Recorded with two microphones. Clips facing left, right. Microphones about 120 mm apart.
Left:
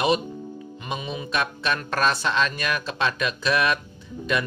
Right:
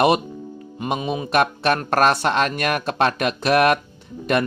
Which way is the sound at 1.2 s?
60° right (ahead or behind).